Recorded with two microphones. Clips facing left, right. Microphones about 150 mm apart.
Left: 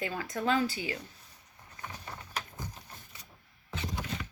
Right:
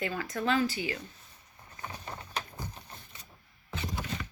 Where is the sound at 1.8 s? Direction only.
30° right (ahead or behind).